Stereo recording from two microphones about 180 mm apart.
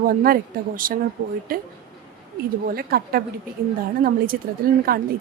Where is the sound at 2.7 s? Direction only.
55° right (ahead or behind).